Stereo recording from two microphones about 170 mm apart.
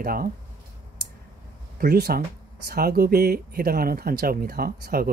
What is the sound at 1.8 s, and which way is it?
Speech, 65° right (ahead or behind).